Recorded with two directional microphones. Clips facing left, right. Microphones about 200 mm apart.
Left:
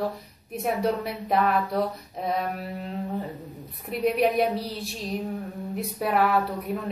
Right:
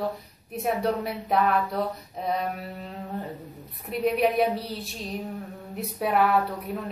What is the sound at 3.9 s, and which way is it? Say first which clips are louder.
A woman's voice: left 1 dB; centre (ahead or behind).